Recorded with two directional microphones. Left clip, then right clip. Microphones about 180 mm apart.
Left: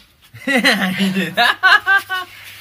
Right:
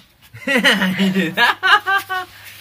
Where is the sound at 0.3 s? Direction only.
25° right (ahead or behind).